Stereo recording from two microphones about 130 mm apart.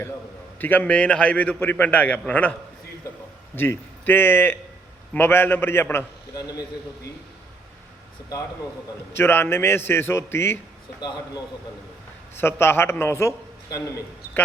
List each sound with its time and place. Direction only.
0.6 s a man's voice: 15° left (ahead or behind)
6.3 s a man's voice: 30° left (ahead or behind)
9.1 s a man's voice: 15° left (ahead or behind)
12.4 s a man's voice: 20° left (ahead or behind)